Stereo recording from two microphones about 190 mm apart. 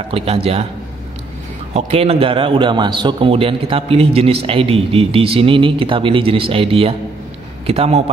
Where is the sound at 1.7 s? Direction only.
35° right (ahead or behind).